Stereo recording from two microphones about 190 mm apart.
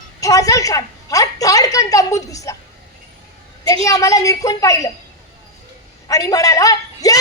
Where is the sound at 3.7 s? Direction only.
15° left (ahead or behind).